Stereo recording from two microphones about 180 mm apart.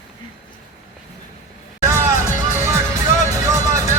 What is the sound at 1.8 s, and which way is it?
Music, 15° right (ahead or behind).